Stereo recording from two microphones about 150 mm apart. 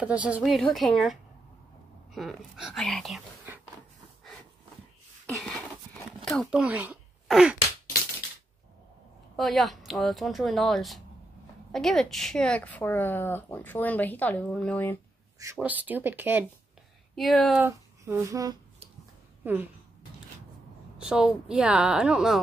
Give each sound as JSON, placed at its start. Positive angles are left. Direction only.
{"t": 0.0, "sound": "a woman's voice", "side_deg": -10}
{"t": 5.2, "sound": "a sound", "side_deg": 10}
{"t": 6.3, "sound": "speech", "side_deg": 0}
{"t": 7.2, "sound": "a sound", "side_deg": 0}
{"t": 9.4, "sound": "a woman's voice", "side_deg": 0}
{"t": 15.6, "sound": "speech", "side_deg": -10}
{"t": 17.1, "sound": "speech", "side_deg": 0}
{"t": 17.6, "sound": "speech", "side_deg": -15}
{"t": 19.4, "sound": "speech", "side_deg": -10}
{"t": 21.0, "sound": "a woman's voice", "side_deg": -5}